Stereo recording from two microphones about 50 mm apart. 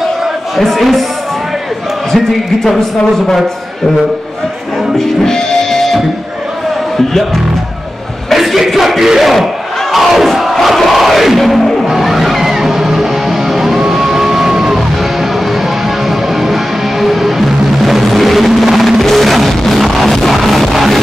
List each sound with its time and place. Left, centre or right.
0.6 s speech: centre
2.1 s speech: centre
4.9 s music: centre
8.3 s speech: centre
9.9 s music: centre
16.1 s music: centre